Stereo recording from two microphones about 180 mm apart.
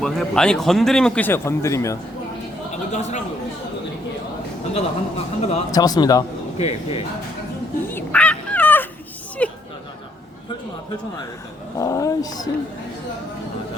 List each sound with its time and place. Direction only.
0.0 s a man's voice: 5° left (ahead or behind)
2.9 s a sound: 40° left (ahead or behind)
4.7 s speech: 35° left (ahead or behind)
5.7 s speech: 20° left (ahead or behind)
6.6 s speech: 35° left (ahead or behind)
7.9 s dog: 10° left (ahead or behind)
9.4 s a sound: 5° left (ahead or behind)
11.8 s speech: 20° left (ahead or behind)